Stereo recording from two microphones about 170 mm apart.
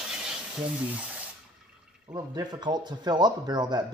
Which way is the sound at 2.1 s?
25° right (ahead or behind).